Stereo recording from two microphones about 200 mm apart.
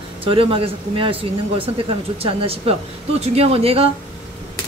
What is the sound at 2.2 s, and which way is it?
Speech, 30° right (ahead or behind).